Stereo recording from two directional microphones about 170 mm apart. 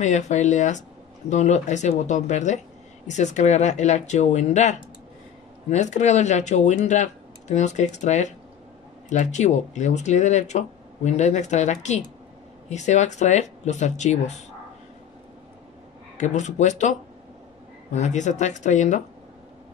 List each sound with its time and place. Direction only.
0.0 s speech: 45° left (ahead or behind)
16.2 s speech: 45° left (ahead or behind)
17.9 s speech: 45° left (ahead or behind)